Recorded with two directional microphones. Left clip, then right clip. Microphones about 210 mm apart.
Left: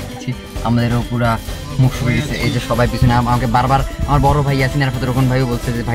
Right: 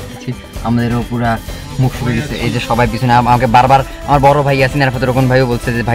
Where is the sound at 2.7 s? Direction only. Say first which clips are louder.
Right 6 dB; 25° right (ahead or behind).